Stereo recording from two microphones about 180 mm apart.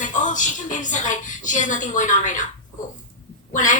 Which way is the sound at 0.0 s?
45° left (ahead or behind).